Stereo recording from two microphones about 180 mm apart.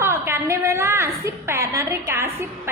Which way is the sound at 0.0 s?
15° right (ahead or behind).